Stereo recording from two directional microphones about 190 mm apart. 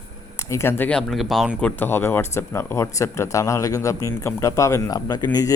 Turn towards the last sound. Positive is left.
turn(degrees=20)  # may be behind; listen again after turning